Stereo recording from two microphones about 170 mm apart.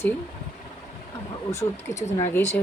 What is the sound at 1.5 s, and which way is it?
Speech, 15° left (ahead or behind).